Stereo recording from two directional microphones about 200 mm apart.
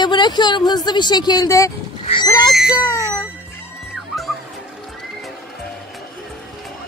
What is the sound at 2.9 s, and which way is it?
Music, 15° left (ahead or behind).